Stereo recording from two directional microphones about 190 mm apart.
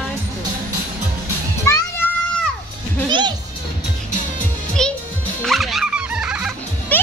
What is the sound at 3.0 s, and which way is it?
Speech, 25° right (ahead or behind).